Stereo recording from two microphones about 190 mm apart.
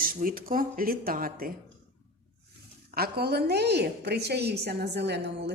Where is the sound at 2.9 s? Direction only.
55° right (ahead or behind).